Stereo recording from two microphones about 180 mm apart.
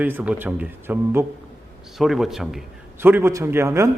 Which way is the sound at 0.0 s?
10° right (ahead or behind).